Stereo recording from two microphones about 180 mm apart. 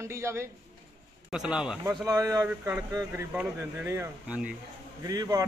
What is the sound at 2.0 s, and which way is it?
A man's voice, 20° right (ahead or behind).